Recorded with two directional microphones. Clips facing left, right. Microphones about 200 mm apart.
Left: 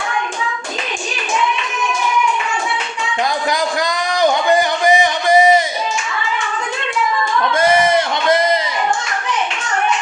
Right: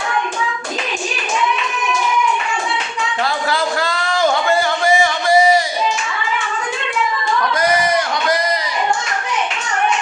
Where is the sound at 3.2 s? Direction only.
15° left (ahead or behind).